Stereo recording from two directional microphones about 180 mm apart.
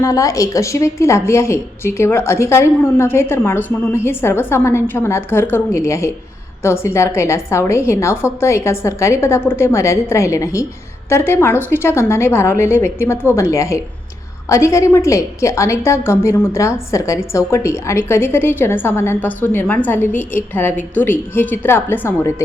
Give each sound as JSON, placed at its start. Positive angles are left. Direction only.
{"t": 0.0, "sound": "a woman's voice", "side_deg": 20}